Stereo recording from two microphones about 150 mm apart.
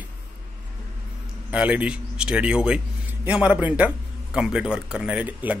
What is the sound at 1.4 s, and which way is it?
Speech, 10° right (ahead or behind).